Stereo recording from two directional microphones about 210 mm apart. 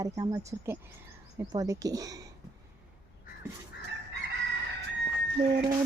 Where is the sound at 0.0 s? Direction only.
15° right (ahead or behind).